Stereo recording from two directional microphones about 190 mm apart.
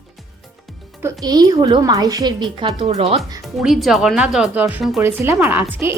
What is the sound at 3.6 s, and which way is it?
Speech, centre (ahead or behind).